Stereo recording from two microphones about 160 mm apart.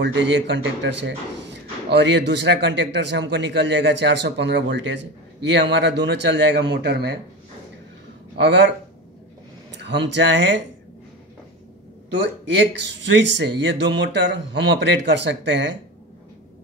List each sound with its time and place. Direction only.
0.0 s a man's voice: 90° right
8.4 s a man's voice: 90° right
9.8 s a man's voice: 90° right
12.2 s a man's voice: 90° right